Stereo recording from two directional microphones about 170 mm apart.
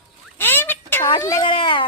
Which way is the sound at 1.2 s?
20° left (ahead or behind).